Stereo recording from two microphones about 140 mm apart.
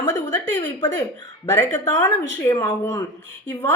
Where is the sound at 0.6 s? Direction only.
30° left (ahead or behind).